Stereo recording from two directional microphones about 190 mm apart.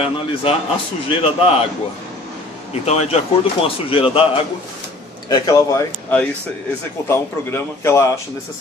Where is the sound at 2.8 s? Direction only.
35° left (ahead or behind); by 5.9 s 20° left (ahead or behind).